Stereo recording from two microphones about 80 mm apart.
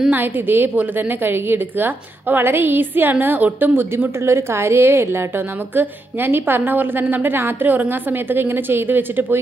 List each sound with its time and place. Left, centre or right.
0.1 s a woman's voice: right